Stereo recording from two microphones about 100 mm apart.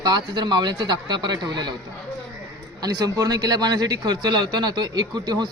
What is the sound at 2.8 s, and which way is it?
Speech, 40° right (ahead or behind).